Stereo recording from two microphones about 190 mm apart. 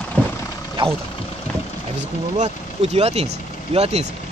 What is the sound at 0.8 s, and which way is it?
Vehicle, 30° right (ahead or behind).